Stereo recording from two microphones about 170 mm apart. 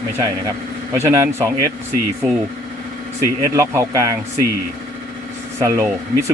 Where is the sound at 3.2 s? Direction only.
15° right (ahead or behind).